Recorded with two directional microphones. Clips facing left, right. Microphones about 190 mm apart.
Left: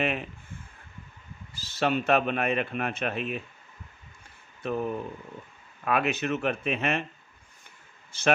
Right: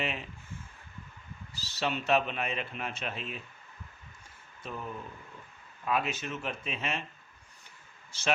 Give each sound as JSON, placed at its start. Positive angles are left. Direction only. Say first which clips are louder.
{"t": 0.0, "sound": "speech", "louder": "left 7 dB", "side_deg": 55}
{"t": 1.5, "sound": "speech", "louder": "left 7 dB", "side_deg": 50}
{"t": 4.6, "sound": "speech", "louder": "left 10 dB", "side_deg": 65}